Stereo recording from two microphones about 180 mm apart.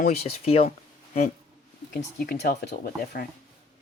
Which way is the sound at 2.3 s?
65° left (ahead or behind).